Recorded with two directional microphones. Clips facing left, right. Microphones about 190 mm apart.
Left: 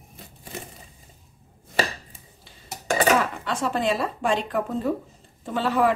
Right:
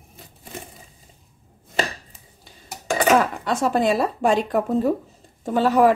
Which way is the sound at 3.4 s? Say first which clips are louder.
Right 5 dB; 45° right (ahead or behind).